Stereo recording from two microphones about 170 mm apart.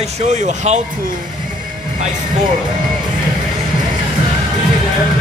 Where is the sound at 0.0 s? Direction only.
45° right (ahead or behind).